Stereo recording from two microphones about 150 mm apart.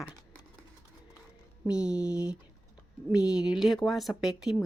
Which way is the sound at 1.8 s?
5° right (ahead or behind).